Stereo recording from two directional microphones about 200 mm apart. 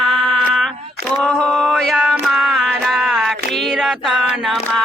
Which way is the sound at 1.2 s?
5° left (ahead or behind).